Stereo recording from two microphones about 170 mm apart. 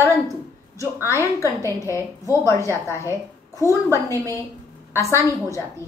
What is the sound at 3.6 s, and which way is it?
Speech, 15° right (ahead or behind).